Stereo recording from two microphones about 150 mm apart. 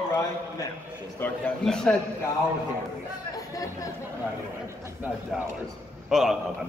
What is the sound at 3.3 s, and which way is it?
Speech, 20° left (ahead or behind).